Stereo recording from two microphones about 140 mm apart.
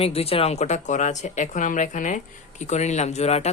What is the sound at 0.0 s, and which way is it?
Speech, 45° left (ahead or behind).